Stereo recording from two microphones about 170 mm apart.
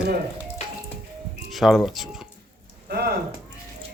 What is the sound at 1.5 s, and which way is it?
Speech, centre (ahead or behind).